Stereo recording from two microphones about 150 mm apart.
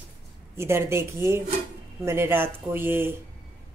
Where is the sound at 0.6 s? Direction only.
15° right (ahead or behind).